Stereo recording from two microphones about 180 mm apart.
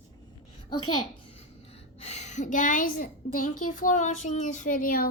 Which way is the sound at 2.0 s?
40° left (ahead or behind).